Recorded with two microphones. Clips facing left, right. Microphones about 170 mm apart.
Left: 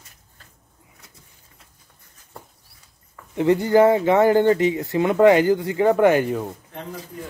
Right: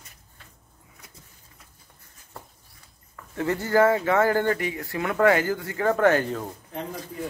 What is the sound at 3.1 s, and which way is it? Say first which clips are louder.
A man's voice: left 8 dB; 15° left (ahead or behind).